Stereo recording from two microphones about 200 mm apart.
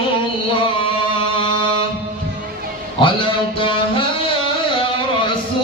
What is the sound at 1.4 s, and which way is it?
Music, 25° left (ahead or behind).